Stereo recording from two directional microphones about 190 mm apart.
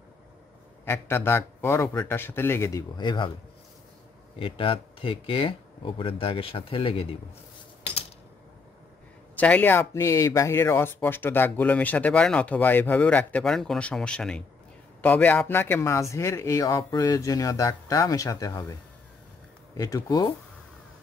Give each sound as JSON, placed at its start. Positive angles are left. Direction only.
{"t": 0.8, "sound": "speech", "side_deg": 10}
{"t": 4.4, "sound": "speech", "side_deg": 30}
{"t": 9.3, "sound": "speech", "side_deg": 10}